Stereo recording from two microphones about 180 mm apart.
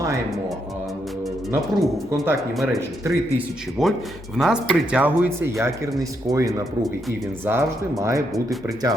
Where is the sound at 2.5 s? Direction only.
Centre (ahead or behind).